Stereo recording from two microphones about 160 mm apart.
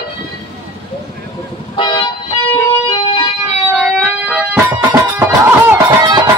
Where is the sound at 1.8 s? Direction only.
30° left (ahead or behind).